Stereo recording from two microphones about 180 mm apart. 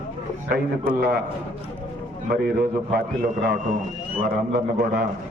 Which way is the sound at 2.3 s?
60° right (ahead or behind).